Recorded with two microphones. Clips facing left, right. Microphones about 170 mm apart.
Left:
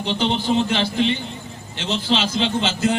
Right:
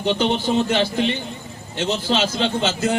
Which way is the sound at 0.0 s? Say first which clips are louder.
Right 2 dB; 45° right (ahead or behind).